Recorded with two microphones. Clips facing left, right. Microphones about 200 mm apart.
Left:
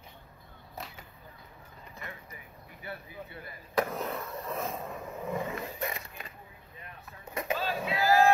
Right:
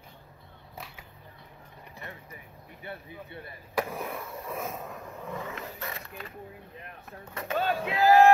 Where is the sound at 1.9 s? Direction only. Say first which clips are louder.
Right 1 dB; 35° right (ahead or behind).